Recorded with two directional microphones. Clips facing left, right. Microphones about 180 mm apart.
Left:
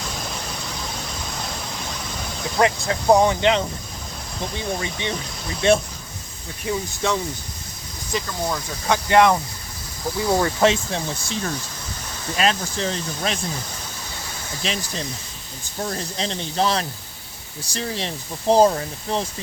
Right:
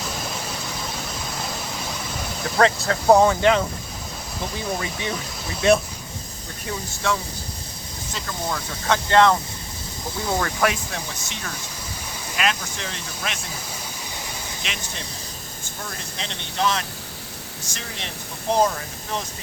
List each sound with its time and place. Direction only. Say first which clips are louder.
2.6 s speech: right 1 dB; 15° left (ahead or behind)
4.8 s speech: left 1 dB; 25° left (ahead or behind)
7.0 s speech: left 1 dB; 20° left (ahead or behind)
8.9 s speech: left 1 dB; 15° left (ahead or behind); by 13.4 s 35° left (ahead or behind)
14.6 s speech: left 6 dB; 35° left (ahead or behind)